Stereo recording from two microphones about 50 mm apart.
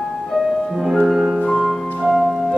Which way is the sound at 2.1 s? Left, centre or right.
Centre.